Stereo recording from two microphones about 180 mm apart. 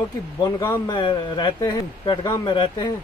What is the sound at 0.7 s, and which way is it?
Speech, 25° left (ahead or behind).